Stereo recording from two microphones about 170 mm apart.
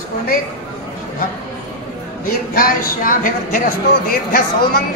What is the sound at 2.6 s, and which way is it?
Speech, 55° left (ahead or behind).